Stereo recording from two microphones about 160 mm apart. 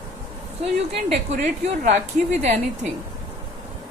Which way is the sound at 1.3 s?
45° right (ahead or behind).